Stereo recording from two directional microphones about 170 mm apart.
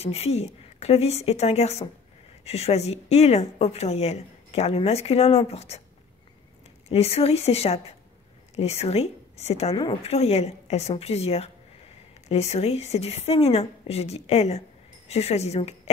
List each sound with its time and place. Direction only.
0.0 s speech: 35° left (ahead or behind)
6.9 s speech: 35° left (ahead or behind)